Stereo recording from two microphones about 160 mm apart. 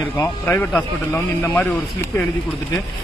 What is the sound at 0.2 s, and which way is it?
A man's voice, 10° left (ahead or behind).